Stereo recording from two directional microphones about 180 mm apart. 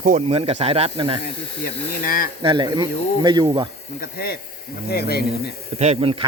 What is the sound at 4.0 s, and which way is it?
Speech, 55° left (ahead or behind).